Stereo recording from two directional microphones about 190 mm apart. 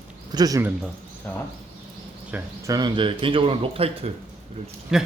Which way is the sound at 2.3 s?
20° right (ahead or behind).